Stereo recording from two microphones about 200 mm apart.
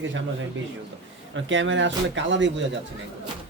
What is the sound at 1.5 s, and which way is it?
Speech, 70° right (ahead or behind).